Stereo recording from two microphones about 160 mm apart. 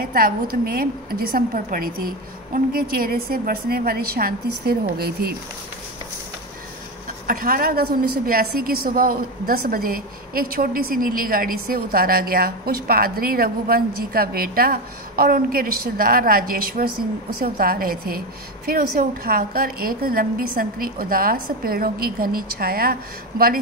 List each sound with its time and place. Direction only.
0.0 s a woman's voice: 65° right (ahead or behind)
7.2 s a woman's voice: 60° right (ahead or behind)